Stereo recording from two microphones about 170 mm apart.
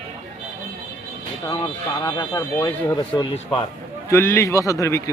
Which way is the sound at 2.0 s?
25° left (ahead or behind).